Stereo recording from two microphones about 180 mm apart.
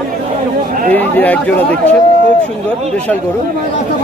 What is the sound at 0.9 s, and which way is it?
Speech, 10° left (ahead or behind).